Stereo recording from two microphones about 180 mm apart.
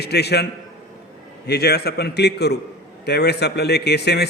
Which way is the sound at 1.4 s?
65° left (ahead or behind).